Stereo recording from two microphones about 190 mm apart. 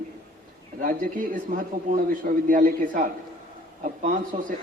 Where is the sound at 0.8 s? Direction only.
45° right (ahead or behind).